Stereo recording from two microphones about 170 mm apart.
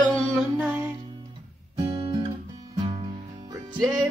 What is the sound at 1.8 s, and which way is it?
Guitar, 30° right (ahead or behind).